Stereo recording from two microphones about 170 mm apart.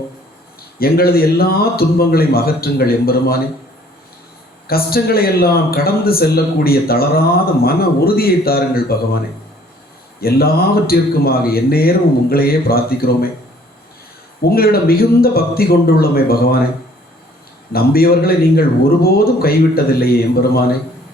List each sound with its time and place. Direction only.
0.8 s speech: 60° left (ahead or behind)
4.7 s speech: 65° left (ahead or behind)
10.2 s speech: 65° left (ahead or behind)
14.4 s speech: 65° left (ahead or behind)
17.7 s speech: 65° left (ahead or behind)